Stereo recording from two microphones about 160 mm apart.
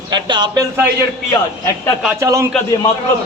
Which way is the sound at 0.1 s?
30° right (ahead or behind).